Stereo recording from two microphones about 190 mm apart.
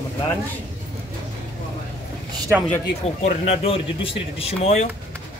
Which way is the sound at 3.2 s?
35° left (ahead or behind).